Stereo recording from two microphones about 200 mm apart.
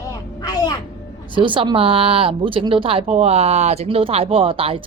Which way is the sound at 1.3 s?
25° right (ahead or behind).